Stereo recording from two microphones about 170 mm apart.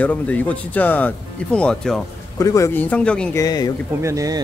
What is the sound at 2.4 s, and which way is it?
Speech, 20° left (ahead or behind).